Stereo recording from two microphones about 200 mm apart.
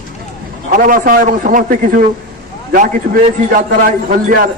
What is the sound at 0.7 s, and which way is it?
A man's voice, 40° right (ahead or behind).